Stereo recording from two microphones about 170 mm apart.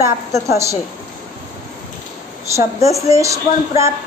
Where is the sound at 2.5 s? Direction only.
20° right (ahead or behind).